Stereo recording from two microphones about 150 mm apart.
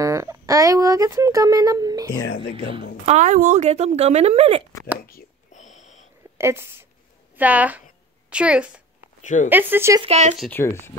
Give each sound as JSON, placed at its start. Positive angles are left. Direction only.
{"t": 0.0, "sound": "speech", "side_deg": -20}
{"t": 3.1, "sound": "speech", "side_deg": -55}
{"t": 5.5, "sound": "a sound", "side_deg": 50}
{"t": 6.3, "sound": "a woman's voice", "side_deg": -15}
{"t": 9.2, "sound": "speech", "side_deg": 55}
{"t": 9.5, "sound": "speech", "side_deg": -15}
{"t": 10.0, "sound": "speech", "side_deg": -50}
{"t": 10.5, "sound": "speech", "side_deg": 15}